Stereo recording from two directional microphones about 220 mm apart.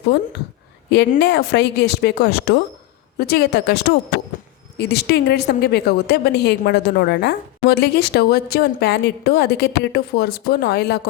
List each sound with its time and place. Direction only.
0.9 s a woman's voice: 50° left (ahead or behind)